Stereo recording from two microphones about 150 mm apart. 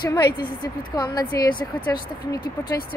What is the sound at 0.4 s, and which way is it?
A woman's voice, 30° left (ahead or behind).